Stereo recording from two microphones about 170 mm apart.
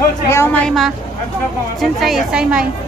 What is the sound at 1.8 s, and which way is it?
Speech, centre (ahead or behind).